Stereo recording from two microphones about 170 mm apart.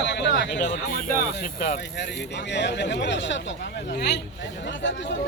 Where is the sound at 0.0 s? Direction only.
90° left.